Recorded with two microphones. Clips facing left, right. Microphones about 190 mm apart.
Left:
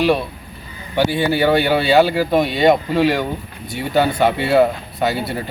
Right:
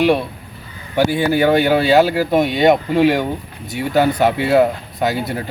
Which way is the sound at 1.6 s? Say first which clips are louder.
Right 1 dB; centre (ahead or behind).